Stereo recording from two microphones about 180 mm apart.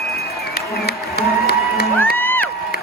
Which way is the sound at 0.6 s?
60° left (ahead or behind).